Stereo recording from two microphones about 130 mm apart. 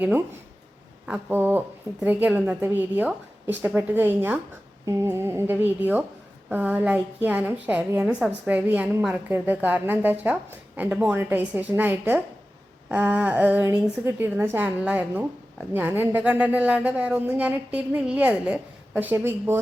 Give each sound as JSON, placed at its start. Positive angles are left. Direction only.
{"t": 0.0, "sound": "a woman's voice", "side_deg": -15}